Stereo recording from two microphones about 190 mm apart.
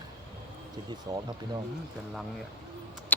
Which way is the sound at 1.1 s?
25° right (ahead or behind).